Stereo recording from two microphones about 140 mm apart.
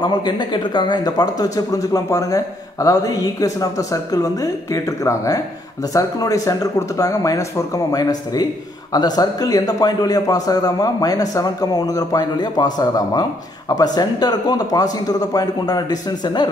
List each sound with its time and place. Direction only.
0.0 s a man's voice: 30° left (ahead or behind)